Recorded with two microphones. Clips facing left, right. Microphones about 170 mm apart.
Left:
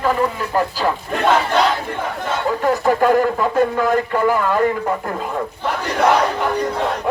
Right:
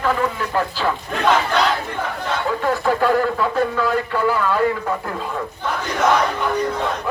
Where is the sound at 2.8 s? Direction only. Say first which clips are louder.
Left 3 dB; 15° left (ahead or behind).